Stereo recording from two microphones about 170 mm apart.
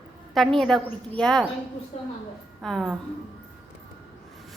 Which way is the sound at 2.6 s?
Centre (ahead or behind).